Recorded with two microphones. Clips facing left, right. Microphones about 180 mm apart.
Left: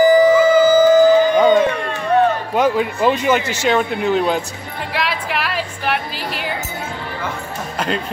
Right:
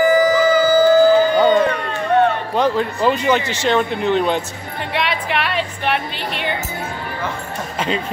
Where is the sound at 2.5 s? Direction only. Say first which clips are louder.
Left 2 dB; 5° left (ahead or behind).